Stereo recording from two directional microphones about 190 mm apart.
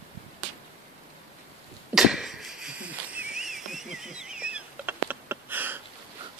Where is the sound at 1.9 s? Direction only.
Centre (ahead or behind).